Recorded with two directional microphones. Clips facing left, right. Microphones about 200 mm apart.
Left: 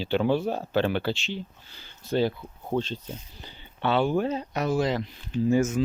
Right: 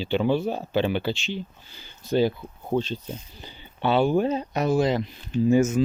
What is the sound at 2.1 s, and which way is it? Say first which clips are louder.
Speech: right 3 dB; 5° right (ahead or behind).